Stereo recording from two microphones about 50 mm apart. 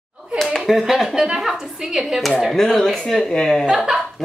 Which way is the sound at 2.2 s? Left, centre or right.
Centre.